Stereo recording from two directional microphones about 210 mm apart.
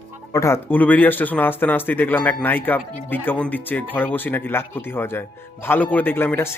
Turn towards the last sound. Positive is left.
turn(degrees=10)  # may be behind; listen again after turning